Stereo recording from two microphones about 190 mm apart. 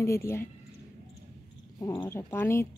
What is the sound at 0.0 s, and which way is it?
Speech, 15° left (ahead or behind).